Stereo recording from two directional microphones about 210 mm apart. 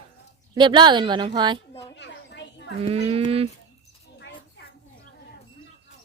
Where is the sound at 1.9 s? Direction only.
55° left (ahead or behind).